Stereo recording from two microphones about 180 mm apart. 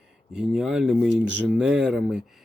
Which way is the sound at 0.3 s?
5° right (ahead or behind).